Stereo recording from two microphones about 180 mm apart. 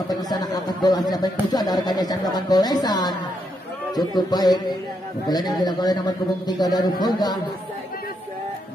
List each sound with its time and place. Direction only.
0.1 s a man's voice: 20° left (ahead or behind)
5.4 s a man's voice: centre (ahead or behind)
5.7 s a man's voice: 20° left (ahead or behind)